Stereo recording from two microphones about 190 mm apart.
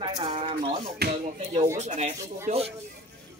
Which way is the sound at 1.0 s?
60° right (ahead or behind).